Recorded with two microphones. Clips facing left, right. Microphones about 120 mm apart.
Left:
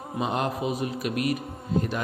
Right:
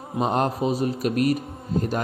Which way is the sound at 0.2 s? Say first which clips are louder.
Right 5 dB; 40° right (ahead or behind).